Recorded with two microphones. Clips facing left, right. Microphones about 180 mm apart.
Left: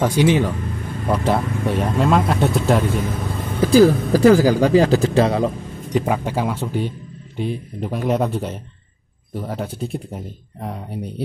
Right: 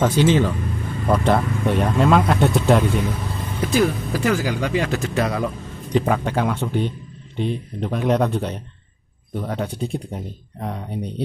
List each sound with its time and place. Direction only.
0.0 s speech: 10° left (ahead or behind)
3.6 s speech: 30° left (ahead or behind)
5.9 s speech: 5° left (ahead or behind)